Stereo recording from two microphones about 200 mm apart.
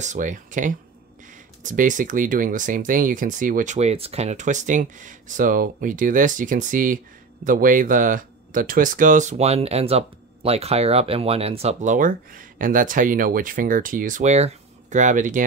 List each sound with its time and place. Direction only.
0.0 s speech: 40° right (ahead or behind)